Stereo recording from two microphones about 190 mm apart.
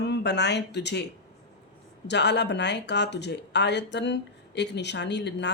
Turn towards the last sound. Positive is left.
turn(degrees=65)  # may be behind; listen again after turning